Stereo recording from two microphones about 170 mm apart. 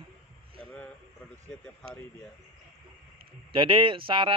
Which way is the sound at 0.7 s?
10° left (ahead or behind).